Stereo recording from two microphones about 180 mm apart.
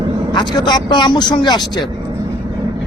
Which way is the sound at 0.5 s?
25° left (ahead or behind).